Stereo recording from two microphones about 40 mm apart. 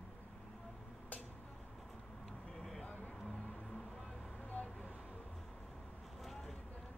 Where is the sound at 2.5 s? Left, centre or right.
Centre.